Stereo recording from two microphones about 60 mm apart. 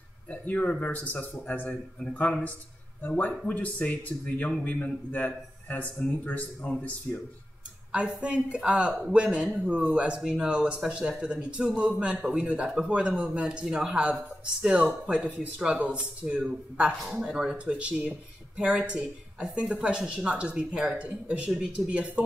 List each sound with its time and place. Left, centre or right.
0.3 s speech: left
3.0 s speech: left
7.9 s speech: centre
17.2 s speech: centre